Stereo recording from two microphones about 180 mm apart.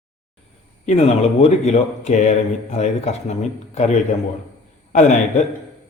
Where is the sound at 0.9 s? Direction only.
35° left (ahead or behind).